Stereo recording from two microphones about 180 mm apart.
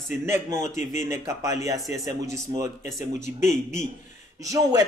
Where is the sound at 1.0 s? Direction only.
15° right (ahead or behind).